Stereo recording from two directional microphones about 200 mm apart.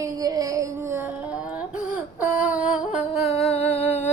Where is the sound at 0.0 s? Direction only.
20° right (ahead or behind).